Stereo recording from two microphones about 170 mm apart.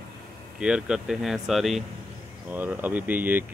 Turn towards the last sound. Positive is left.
turn(degrees=-10)  # may be behind; listen again after turning